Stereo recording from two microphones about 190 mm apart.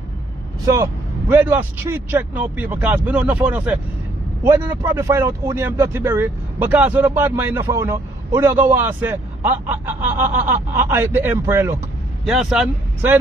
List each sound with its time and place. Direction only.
1.3 s a man's voice: 10° right (ahead or behind)
12.3 s speech: 5° right (ahead or behind)